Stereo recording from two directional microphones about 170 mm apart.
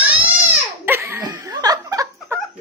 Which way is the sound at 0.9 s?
15° right (ahead or behind).